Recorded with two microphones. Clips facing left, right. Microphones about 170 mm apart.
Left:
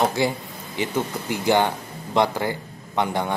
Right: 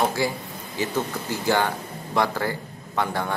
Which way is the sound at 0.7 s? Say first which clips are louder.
Left 1 dB; 15° left (ahead or behind).